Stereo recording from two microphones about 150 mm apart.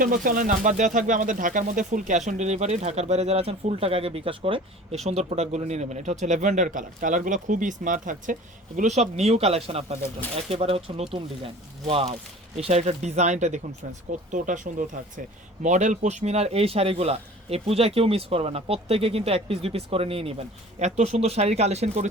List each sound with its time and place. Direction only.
0.0 s speech: 70° right (ahead or behind); by 4.9 s 35° right (ahead or behind)
5.0 s a man's voice: 45° right (ahead or behind)